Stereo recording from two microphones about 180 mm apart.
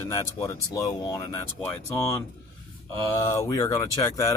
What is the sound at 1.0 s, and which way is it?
Speech, 20° left (ahead or behind).